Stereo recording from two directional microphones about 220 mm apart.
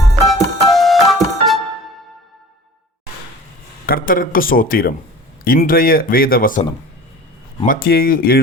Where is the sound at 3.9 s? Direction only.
40° left (ahead or behind).